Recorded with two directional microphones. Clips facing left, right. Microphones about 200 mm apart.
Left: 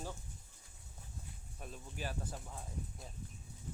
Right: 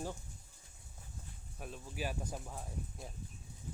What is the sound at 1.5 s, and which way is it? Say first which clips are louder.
Speech: right 4 dB; 5° right (ahead or behind).